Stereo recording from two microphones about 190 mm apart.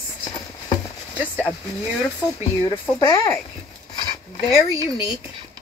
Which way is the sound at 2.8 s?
15° left (ahead or behind).